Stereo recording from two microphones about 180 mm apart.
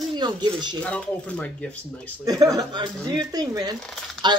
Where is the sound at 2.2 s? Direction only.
20° right (ahead or behind).